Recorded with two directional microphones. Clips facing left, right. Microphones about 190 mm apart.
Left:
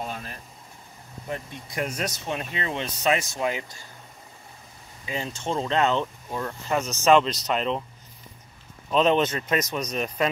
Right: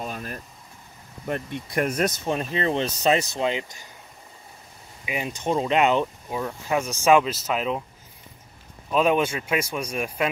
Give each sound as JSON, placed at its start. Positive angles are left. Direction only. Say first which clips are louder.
{"t": 1.3, "sound": "speech", "louder": "right 6 dB", "side_deg": -55}
{"t": 2.2, "sound": "speech", "louder": "right 6 dB", "side_deg": -35}
{"t": 5.0, "sound": "speech", "louder": "right 3 dB", "side_deg": -15}
{"t": 8.9, "sound": "speech", "louder": "even", "side_deg": -10}